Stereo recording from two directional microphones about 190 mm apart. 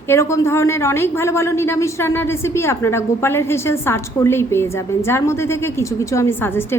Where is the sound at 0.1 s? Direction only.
15° left (ahead or behind).